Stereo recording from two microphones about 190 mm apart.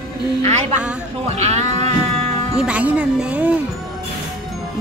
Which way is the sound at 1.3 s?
35° right (ahead or behind).